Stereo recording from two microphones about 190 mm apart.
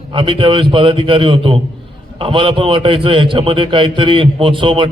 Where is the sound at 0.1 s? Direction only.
25° right (ahead or behind).